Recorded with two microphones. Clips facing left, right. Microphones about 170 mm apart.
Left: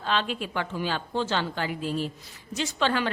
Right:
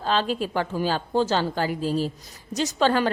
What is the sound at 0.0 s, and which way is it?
A woman's voice, 35° right (ahead or behind).